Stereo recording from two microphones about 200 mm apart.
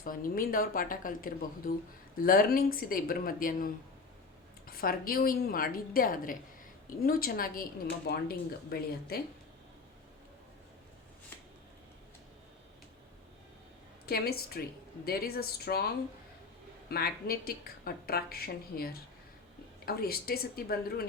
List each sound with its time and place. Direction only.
0.0 s a woman's voice: 45° left (ahead or behind)
14.1 s a woman's voice: 50° left (ahead or behind)
16.9 s a woman's voice: 50° left (ahead or behind)